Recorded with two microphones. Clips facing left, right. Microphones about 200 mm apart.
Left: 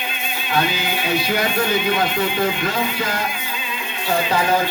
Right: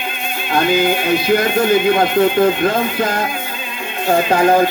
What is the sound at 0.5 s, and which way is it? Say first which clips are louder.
Speech: right 7 dB; 50° right (ahead or behind).